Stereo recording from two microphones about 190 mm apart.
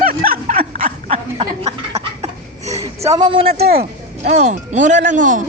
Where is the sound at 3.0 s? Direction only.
20° right (ahead or behind).